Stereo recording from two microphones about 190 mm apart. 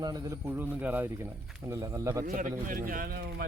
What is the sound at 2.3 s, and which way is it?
Speech, 45° right (ahead or behind).